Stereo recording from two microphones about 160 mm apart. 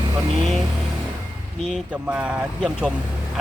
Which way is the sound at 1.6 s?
5° right (ahead or behind).